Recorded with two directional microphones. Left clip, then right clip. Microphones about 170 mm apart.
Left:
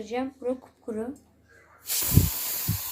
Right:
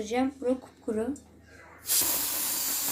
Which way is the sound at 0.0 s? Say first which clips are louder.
Right 2 dB; centre (ahead or behind).